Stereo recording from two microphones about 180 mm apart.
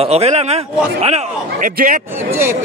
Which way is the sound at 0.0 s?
35° right (ahead or behind).